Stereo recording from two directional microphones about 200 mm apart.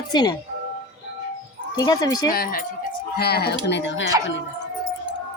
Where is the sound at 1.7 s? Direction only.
20° left (ahead or behind).